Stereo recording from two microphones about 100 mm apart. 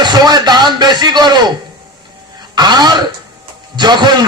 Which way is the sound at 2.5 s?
45° right (ahead or behind).